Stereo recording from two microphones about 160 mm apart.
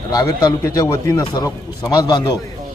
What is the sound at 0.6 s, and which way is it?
Speech, 20° left (ahead or behind).